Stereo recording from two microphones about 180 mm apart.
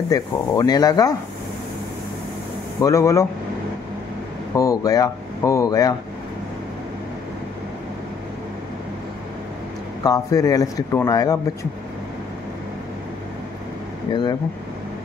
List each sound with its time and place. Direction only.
0.1 s speech: 20° left (ahead or behind)
2.8 s speech: 15° left (ahead or behind)
4.6 s speech: 20° left (ahead or behind)
10.0 s speech: 20° left (ahead or behind)
14.1 s speech: 20° left (ahead or behind)